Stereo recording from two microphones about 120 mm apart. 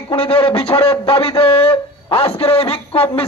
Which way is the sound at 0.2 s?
50° left (ahead or behind).